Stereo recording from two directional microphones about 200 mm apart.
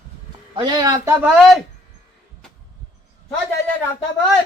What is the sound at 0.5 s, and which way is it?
Speech, 20° right (ahead or behind).